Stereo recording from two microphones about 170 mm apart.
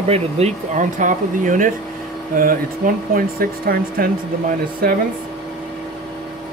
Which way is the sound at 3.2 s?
60° right (ahead or behind).